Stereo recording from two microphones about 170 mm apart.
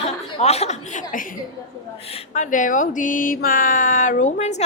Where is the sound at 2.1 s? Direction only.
40° left (ahead or behind).